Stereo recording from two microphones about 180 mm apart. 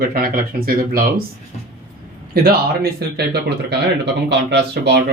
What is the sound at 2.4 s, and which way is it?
Speech, 60° right (ahead or behind).